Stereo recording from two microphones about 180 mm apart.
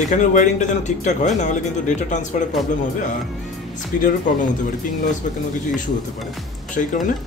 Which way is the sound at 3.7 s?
45° left (ahead or behind).